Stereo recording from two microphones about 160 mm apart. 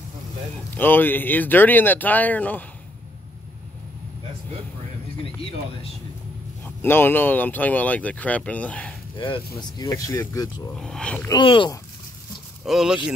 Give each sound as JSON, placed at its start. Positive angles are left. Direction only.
{"t": 0.7, "sound": "speech", "side_deg": 10}
{"t": 6.6, "sound": "speech", "side_deg": 15}
{"t": 9.6, "sound": "speech", "side_deg": 25}
{"t": 10.8, "sound": "speech", "side_deg": 5}
{"t": 11.2, "sound": "speech", "side_deg": 30}
{"t": 12.6, "sound": "speech", "side_deg": -5}